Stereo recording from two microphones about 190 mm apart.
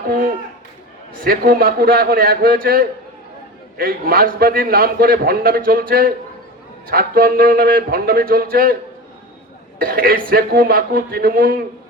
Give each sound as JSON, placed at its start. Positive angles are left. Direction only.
{"t": 0.1, "sound": "a sound", "side_deg": -50}
{"t": 1.1, "sound": "a man's voice", "side_deg": -50}
{"t": 9.7, "sound": "a man's voice", "side_deg": -50}